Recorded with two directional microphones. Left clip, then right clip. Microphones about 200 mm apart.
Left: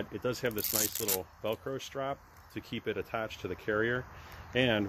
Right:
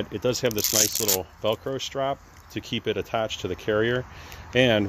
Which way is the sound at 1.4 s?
25° right (ahead or behind).